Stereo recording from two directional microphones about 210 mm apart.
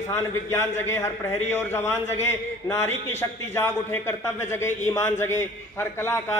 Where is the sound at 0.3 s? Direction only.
10° left (ahead or behind).